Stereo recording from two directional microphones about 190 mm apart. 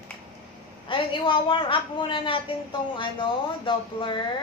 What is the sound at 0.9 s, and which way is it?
A woman's voice, 25° left (ahead or behind).